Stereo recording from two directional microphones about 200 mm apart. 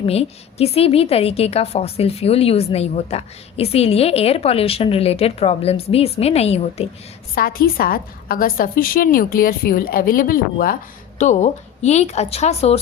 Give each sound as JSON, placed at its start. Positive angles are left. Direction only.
{"t": 0.0, "sound": "a woman's voice", "side_deg": 30}
{"t": 7.3, "sound": "a woman's voice", "side_deg": 45}